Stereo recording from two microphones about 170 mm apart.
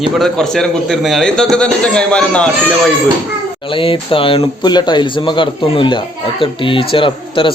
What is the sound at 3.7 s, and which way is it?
A man's voice, 30° left (ahead or behind).